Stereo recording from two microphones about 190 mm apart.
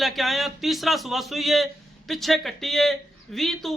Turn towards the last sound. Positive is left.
turn(degrees=0)  # may be behind; listen again after turning